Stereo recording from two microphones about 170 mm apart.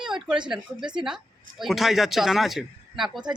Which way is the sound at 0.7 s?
25° right (ahead or behind).